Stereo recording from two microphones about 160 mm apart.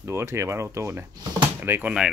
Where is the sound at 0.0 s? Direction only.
15° right (ahead or behind).